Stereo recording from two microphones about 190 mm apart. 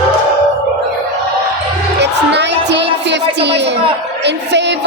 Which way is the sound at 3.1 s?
65° right (ahead or behind).